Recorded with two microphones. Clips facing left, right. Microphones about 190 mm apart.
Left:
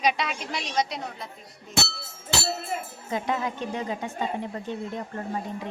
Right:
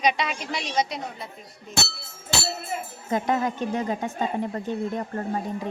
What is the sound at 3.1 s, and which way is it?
Speech, 45° right (ahead or behind).